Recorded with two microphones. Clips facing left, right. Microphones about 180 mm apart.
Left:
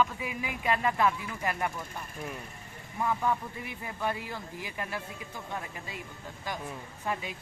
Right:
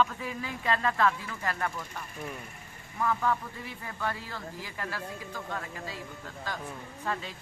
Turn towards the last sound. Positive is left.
turn(degrees=15)  # may be behind; listen again after turning